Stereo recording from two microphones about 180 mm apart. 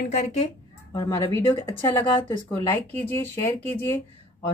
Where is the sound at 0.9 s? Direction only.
20° left (ahead or behind).